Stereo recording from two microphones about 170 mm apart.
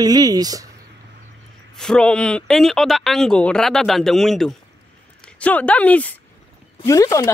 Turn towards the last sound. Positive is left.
turn(degrees=20)  # may be behind; listen again after turning